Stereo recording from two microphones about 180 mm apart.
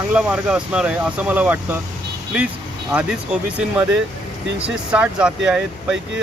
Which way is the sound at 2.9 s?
5° right (ahead or behind).